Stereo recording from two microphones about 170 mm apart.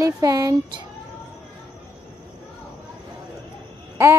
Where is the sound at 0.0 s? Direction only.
20° right (ahead or behind).